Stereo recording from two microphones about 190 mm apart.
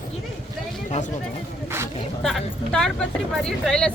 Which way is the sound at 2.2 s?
Centre (ahead or behind).